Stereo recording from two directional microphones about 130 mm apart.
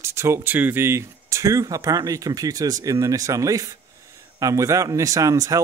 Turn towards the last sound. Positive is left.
turn(degrees=-25)  # may be behind; listen again after turning